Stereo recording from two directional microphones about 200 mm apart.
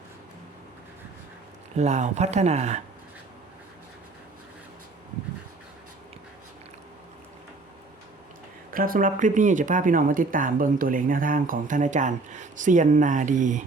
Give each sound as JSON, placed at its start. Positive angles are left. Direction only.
{"t": 1.7, "sound": "speech", "side_deg": -35}
{"t": 8.7, "sound": "speech", "side_deg": -45}